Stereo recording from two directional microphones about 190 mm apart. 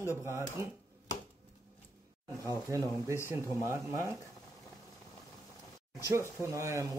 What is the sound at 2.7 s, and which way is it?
Speech, 20° right (ahead or behind).